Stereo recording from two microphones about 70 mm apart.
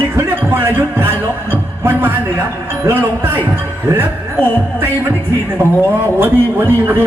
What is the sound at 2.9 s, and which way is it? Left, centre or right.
Speech, right.